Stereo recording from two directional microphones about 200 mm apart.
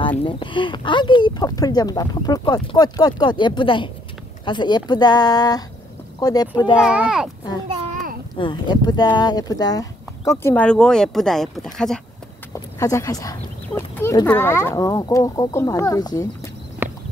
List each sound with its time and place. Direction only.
0.2 s speech: 25° left (ahead or behind)
6.7 s a child's voice: 5° right (ahead or behind)
7.6 s a sound: 30° right (ahead or behind)
7.9 s a sound: 45° right (ahead or behind)
8.4 s speech: 25° left (ahead or behind); by 12.0 s centre (ahead or behind)
12.7 s speech: 15° left (ahead or behind)